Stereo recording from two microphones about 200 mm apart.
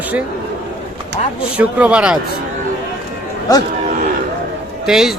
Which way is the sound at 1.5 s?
5° right (ahead or behind).